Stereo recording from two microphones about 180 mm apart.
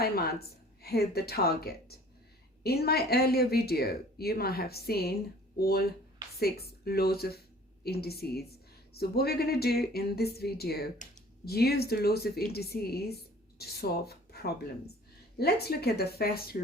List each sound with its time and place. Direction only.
0.0 s a woman's voice: 60° left (ahead or behind)
10.9 s speech: 45° left (ahead or behind)
11.4 s a woman's voice: 60° left (ahead or behind)